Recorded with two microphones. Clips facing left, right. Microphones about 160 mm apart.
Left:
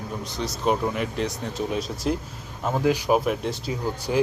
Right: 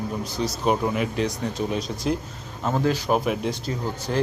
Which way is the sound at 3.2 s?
Centre (ahead or behind).